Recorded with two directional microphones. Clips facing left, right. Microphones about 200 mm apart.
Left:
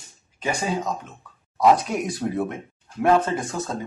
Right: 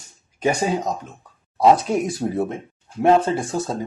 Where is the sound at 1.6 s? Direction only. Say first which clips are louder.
Right 3 dB; 30° right (ahead or behind).